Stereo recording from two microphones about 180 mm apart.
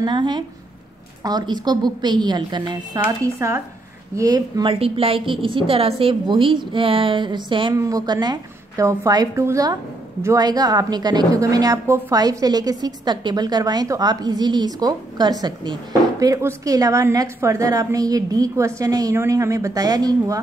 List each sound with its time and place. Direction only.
0.0 s a woman's voice: 25° right (ahead or behind)
4.7 s a woman's voice: 30° right (ahead or behind)